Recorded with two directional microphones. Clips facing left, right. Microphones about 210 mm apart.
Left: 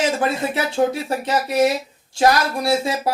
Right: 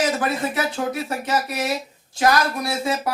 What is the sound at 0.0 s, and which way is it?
Speech, 25° left (ahead or behind).